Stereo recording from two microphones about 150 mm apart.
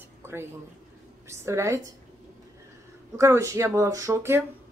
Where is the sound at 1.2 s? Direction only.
20° right (ahead or behind).